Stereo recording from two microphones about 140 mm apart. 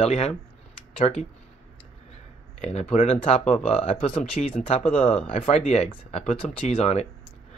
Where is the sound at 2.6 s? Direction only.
50° left (ahead or behind).